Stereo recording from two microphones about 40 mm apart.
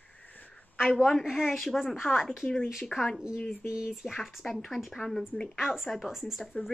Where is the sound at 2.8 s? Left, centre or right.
Centre.